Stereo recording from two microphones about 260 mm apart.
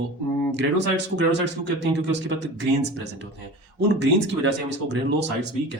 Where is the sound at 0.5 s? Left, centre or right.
Right.